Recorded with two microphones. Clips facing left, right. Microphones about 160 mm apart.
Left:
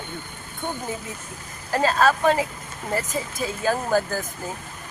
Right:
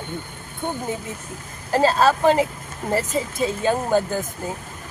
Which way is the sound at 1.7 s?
30° right (ahead or behind).